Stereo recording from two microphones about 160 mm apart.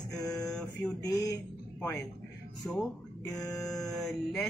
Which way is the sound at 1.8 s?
5° left (ahead or behind).